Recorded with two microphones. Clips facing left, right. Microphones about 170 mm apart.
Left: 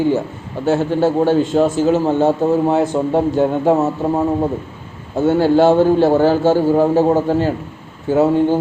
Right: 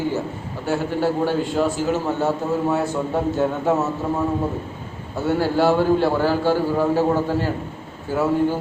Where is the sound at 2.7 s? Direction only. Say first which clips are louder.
Left 6 dB; 20° left (ahead or behind).